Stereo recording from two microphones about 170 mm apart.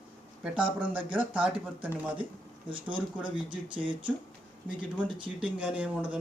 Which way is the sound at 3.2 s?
10° right (ahead or behind).